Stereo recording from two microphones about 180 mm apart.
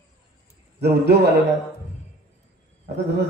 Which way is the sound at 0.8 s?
65° right (ahead or behind).